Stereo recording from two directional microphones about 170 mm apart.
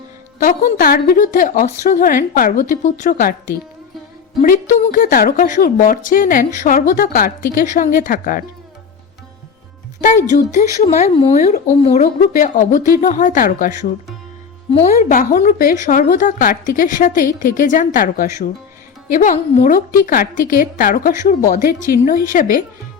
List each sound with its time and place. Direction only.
0.3 s a woman's voice: 60° left (ahead or behind)
10.0 s a woman's voice: 45° left (ahead or behind)
14.7 s a woman's voice: 40° left (ahead or behind)
15.3 s a woman's voice: 55° left (ahead or behind)